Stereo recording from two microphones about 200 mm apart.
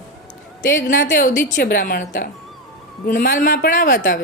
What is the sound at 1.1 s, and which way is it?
A woman's voice, 40° left (ahead or behind).